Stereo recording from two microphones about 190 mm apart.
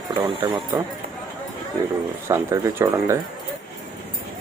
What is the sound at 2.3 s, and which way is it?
Speech, 15° right (ahead or behind).